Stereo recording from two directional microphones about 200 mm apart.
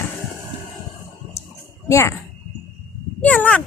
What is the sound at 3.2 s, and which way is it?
Speech, 5° left (ahead or behind).